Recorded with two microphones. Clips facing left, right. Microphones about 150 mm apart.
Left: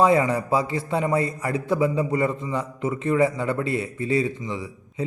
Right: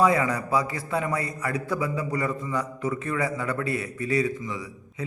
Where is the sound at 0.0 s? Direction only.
25° left (ahead or behind).